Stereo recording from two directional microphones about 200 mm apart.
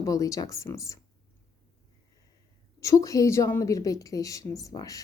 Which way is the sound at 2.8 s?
15° left (ahead or behind).